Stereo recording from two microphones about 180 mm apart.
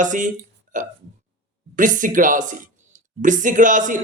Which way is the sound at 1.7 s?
45° right (ahead or behind).